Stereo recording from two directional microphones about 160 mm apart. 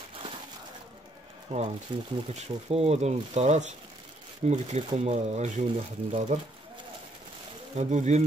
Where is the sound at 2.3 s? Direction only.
40° right (ahead or behind).